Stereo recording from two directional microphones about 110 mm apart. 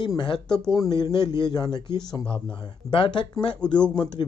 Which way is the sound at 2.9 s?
50° left (ahead or behind).